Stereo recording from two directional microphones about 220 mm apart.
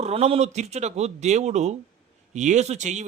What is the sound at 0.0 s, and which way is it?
A man's voice, 30° right (ahead or behind).